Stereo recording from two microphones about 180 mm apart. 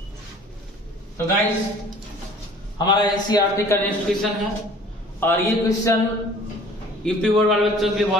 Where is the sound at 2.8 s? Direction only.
25° left (ahead or behind).